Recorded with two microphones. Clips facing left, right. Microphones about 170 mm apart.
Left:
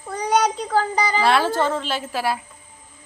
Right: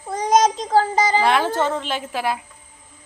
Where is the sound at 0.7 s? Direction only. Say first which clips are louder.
Right 4 dB; 20° right (ahead or behind).